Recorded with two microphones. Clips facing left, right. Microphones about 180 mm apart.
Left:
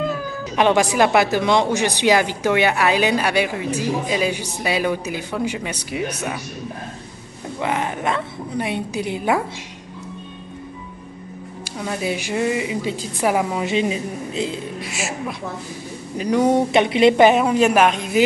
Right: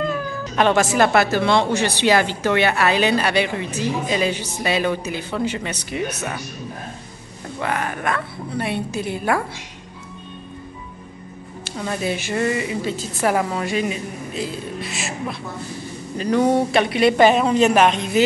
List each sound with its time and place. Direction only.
0.6 s speech: 15° left (ahead or behind)
7.5 s speech: 15° left (ahead or behind)
11.6 s speech: 5° left (ahead or behind); by 14.6 s 25° left (ahead or behind)
14.8 s speech: 10° left (ahead or behind)